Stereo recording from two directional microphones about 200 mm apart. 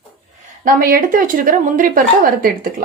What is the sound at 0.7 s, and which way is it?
A woman's voice, 45° right (ahead or behind).